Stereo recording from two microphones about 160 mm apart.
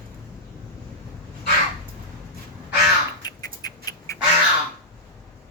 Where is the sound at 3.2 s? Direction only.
25° left (ahead or behind).